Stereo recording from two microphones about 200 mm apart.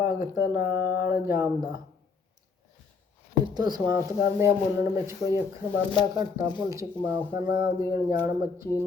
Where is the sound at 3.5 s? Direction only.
20° right (ahead or behind).